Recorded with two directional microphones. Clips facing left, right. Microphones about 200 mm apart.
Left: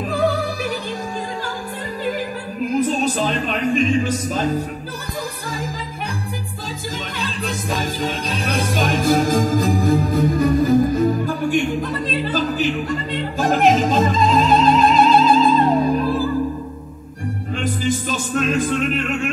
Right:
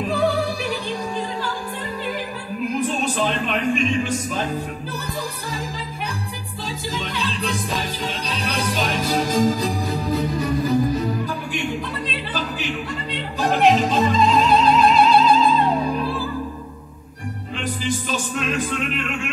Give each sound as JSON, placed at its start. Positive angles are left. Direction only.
{"t": 2.8, "sound": "music", "side_deg": 40}
{"t": 6.9, "sound": "music", "side_deg": 45}
{"t": 17.6, "sound": "music", "side_deg": 45}